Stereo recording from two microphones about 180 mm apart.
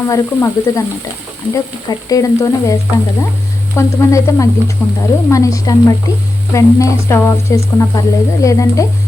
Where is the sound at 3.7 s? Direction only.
15° left (ahead or behind).